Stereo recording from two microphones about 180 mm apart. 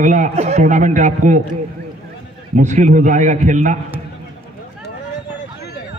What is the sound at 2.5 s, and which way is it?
A man's voice, 45° right (ahead or behind).